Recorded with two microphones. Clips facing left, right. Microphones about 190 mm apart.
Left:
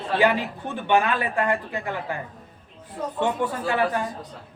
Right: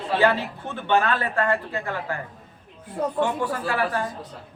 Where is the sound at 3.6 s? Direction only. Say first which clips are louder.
Left 3 dB; 20° left (ahead or behind).